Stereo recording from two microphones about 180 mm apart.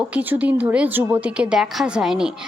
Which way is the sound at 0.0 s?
10° right (ahead or behind).